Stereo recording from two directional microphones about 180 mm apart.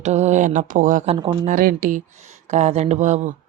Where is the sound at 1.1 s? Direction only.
25° right (ahead or behind).